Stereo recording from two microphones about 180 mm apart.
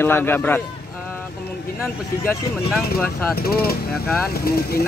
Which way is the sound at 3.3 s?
60° left (ahead or behind).